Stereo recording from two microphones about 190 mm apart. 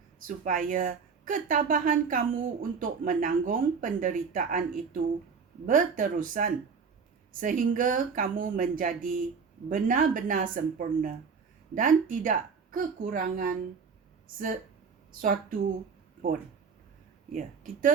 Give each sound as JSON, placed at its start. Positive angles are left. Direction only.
{"t": 0.3, "sound": "a woman's voice", "side_deg": -45}
{"t": 5.6, "sound": "a woman's voice", "side_deg": -45}
{"t": 15.2, "sound": "a woman's voice", "side_deg": -45}
{"t": 17.3, "sound": "a woman's voice", "side_deg": -45}